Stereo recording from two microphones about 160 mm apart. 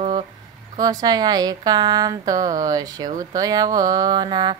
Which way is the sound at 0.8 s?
25° right (ahead or behind).